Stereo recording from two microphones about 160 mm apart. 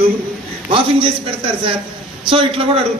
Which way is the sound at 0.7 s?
35° right (ahead or behind).